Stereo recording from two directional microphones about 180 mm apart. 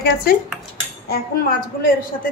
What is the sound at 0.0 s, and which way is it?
A woman's voice, 60° left (ahead or behind).